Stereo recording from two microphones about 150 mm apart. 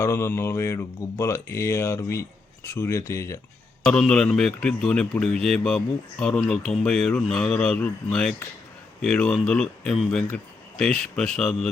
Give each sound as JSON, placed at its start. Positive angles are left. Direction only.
{"t": 0.0, "sound": "speech", "side_deg": 20}
{"t": 3.8, "sound": "a man's voice", "side_deg": 5}